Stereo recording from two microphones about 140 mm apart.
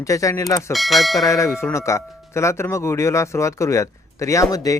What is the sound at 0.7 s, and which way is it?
Speech, centre (ahead or behind).